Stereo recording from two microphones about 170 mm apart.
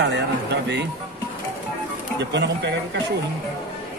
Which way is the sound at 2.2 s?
90° right.